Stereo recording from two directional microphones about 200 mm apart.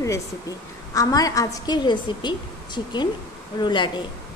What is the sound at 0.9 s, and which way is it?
A woman's voice, 15° left (ahead or behind).